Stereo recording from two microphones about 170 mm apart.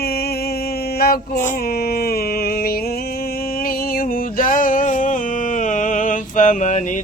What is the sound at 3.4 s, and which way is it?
Music, 60° left (ahead or behind).